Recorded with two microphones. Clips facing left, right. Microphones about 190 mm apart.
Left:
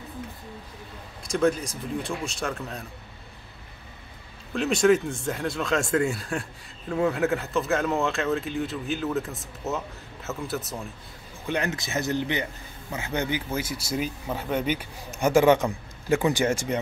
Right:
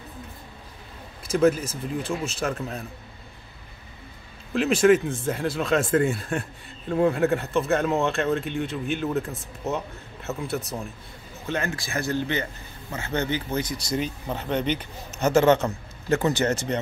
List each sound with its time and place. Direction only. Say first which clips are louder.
1.2 s speech: right 3 dB; 5° right (ahead or behind)
4.6 s speech: right 2 dB; centre (ahead or behind)
11.4 s speech: left 1 dB; 15° left (ahead or behind)